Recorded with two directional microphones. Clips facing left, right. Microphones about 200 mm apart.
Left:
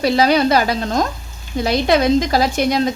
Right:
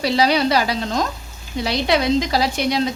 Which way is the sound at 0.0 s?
50° left (ahead or behind).